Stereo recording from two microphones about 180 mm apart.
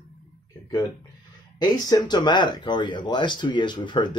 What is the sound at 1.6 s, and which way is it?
Speech, 20° left (ahead or behind).